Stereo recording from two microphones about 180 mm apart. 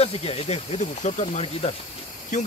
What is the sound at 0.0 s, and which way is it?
Speech, 35° left (ahead or behind).